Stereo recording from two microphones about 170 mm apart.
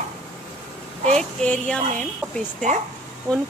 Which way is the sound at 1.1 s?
5° left (ahead or behind).